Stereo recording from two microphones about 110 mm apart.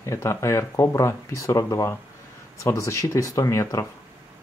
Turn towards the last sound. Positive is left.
turn(degrees=30)  # may be behind; listen again after turning